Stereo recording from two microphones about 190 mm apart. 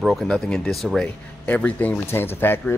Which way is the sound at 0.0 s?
Centre (ahead or behind).